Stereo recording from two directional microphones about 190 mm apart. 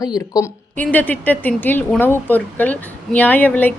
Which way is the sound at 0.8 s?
10° left (ahead or behind).